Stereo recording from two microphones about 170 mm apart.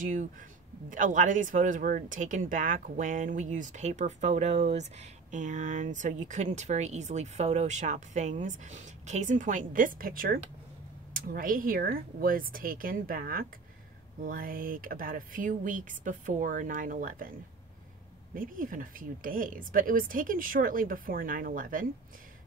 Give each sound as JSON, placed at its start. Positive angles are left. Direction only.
{"t": 0.0, "sound": "speech", "side_deg": -50}
{"t": 18.3, "sound": "speech", "side_deg": -55}